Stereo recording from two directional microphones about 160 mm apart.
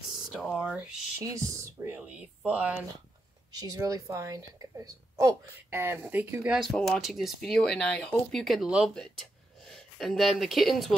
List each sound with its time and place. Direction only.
0.3 s speech: 5° right (ahead or behind)
3.5 s a woman's voice: 25° right (ahead or behind); by 11.0 s centre (ahead or behind)